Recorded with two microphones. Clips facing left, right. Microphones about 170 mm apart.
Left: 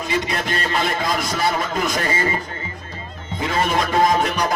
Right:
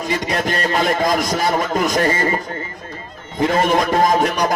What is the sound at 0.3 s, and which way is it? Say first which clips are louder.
A man's voice: right 4 dB; 45° right (ahead or behind).